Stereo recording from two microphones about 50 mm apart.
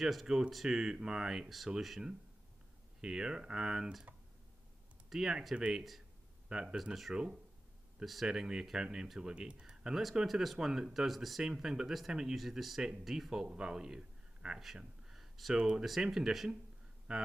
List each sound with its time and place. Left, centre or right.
0.0 s speech: centre
3.0 s speech: centre
5.1 s speech: centre
6.8 s speech: centre
10.2 s a man's voice: centre
14.8 s a sound: centre
15.5 s speech: centre
15.8 s speech: centre